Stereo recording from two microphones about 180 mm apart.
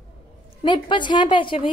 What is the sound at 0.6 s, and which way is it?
A woman's voice, 25° left (ahead or behind).